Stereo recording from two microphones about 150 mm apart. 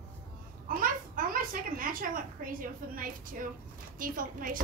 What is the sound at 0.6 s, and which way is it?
A child's voice, 70° right (ahead or behind).